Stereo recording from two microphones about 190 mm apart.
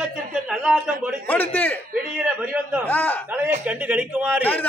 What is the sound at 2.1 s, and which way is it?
Speech, 5° right (ahead or behind).